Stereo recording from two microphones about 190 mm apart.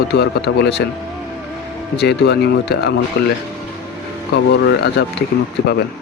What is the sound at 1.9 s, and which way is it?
Speech, 60° left (ahead or behind).